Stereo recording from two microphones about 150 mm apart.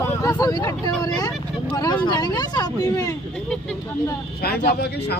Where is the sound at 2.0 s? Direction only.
30° left (ahead or behind).